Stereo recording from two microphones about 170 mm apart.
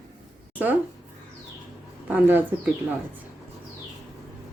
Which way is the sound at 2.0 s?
10° right (ahead or behind).